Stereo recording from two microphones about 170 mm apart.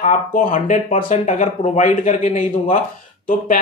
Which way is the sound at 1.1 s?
45° left (ahead or behind).